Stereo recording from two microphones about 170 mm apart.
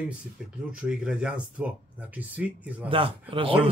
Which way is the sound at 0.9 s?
5° right (ahead or behind).